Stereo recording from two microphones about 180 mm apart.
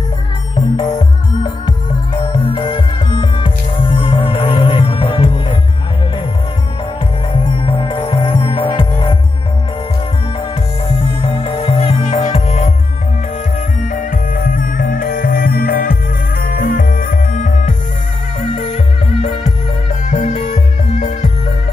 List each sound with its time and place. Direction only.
2.3 s music: 30° left (ahead or behind)
7.3 s music: 30° left (ahead or behind)
11.1 s music: 30° left (ahead or behind)
13.8 s music: 50° left (ahead or behind)